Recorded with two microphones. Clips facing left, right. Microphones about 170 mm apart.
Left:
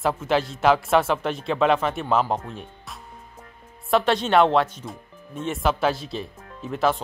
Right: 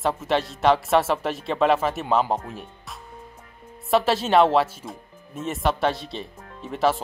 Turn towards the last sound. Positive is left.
turn(degrees=0)  # may be behind; listen again after turning